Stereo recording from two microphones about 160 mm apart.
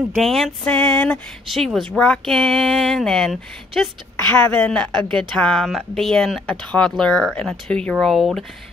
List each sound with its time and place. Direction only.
0.2 s a woman's voice: centre (ahead or behind)